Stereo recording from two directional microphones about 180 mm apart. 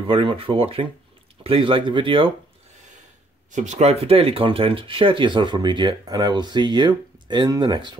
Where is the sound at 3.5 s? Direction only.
40° right (ahead or behind).